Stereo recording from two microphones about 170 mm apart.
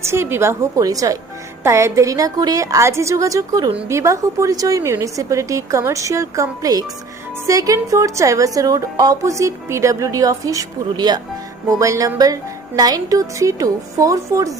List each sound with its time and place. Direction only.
0.0 s a woman's voice: 15° right (ahead or behind)